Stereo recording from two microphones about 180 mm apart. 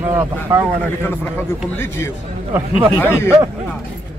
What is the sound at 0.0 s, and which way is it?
Speech, 10° right (ahead or behind).